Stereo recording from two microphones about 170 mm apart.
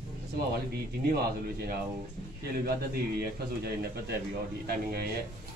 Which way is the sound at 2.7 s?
65° right (ahead or behind).